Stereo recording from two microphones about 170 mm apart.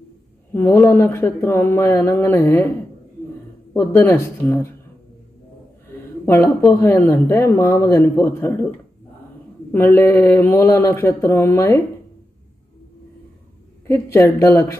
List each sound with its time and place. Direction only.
0.5 s speech: 15° left (ahead or behind)
3.7 s speech: 15° left (ahead or behind)
5.9 s speech: 15° left (ahead or behind)
13.8 s speech: 20° left (ahead or behind)